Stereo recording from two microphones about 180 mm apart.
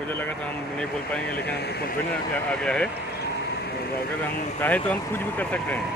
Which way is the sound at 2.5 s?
5° left (ahead or behind).